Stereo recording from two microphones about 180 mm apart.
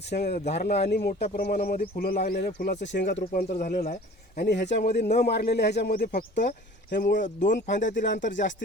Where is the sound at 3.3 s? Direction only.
55° left (ahead or behind).